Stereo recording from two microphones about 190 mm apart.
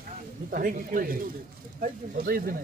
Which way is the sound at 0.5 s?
50° right (ahead or behind).